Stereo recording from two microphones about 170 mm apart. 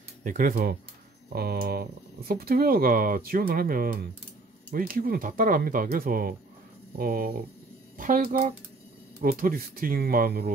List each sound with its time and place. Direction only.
0.2 s speech: 50° right (ahead or behind)